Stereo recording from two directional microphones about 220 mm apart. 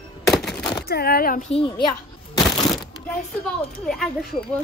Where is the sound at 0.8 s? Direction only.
45° left (ahead or behind).